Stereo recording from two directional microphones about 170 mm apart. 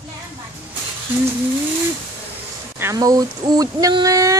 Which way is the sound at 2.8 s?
20° right (ahead or behind).